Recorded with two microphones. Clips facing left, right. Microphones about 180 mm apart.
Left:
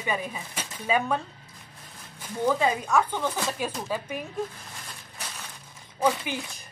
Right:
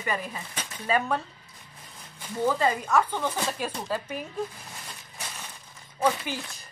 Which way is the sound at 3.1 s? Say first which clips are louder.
Even; 5° right (ahead or behind).